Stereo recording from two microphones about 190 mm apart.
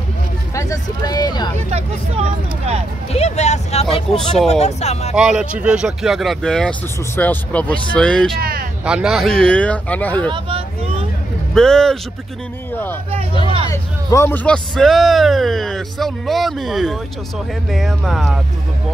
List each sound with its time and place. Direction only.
0.6 s a sound: 20° left (ahead or behind)
3.1 s speech: 35° left (ahead or behind)
5.1 s speech: 5° right (ahead or behind)
8.4 s a sound: 50° right (ahead or behind)
8.8 s speech: 5° right (ahead or behind)
10.3 s vehicle: 30° right (ahead or behind)
11.5 s speech: 5° left (ahead or behind)
13.7 s speech: 15° left (ahead or behind)